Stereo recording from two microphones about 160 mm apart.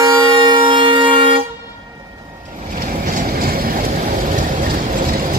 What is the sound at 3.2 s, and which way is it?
Train, 70° right (ahead or behind).